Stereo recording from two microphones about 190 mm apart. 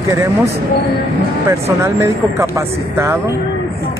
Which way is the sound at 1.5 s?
15° right (ahead or behind).